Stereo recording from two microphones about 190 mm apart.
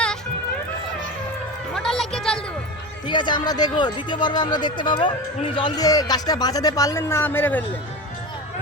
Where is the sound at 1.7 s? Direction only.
Centre (ahead or behind).